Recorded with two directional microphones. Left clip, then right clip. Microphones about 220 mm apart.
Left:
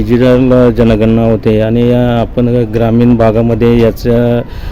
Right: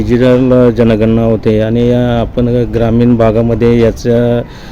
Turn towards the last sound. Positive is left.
turn(degrees=5)  # may be behind; listen again after turning